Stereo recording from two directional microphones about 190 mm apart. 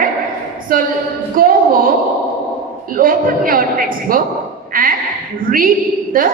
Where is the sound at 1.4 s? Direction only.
50° right (ahead or behind).